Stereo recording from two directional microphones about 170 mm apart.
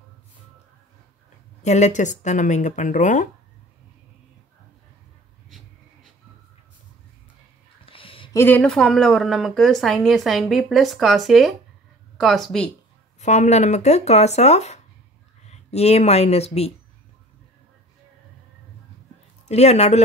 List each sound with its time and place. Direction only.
1.6 s speech: 45° left (ahead or behind)
7.8 s a sound: 30° left (ahead or behind)
8.3 s a woman's voice: 15° left (ahead or behind)
13.2 s speech: 45° left (ahead or behind)
19.4 s speech: 40° left (ahead or behind)